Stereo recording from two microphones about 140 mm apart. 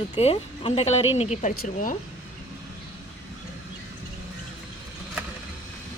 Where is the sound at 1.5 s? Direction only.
80° left.